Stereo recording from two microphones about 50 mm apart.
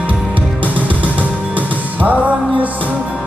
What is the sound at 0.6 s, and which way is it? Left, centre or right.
Music, right.